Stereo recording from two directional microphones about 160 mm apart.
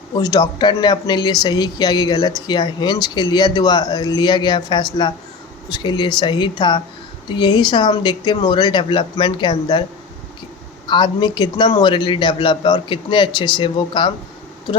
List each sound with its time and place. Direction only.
0.2 s speech: 25° left (ahead or behind)
10.8 s speech: 30° left (ahead or behind)